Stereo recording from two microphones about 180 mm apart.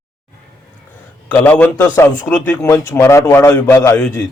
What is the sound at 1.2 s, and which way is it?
A man's voice, 10° left (ahead or behind).